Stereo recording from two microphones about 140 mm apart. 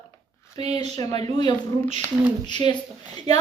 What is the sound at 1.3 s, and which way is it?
A woman's voice, 35° left (ahead or behind).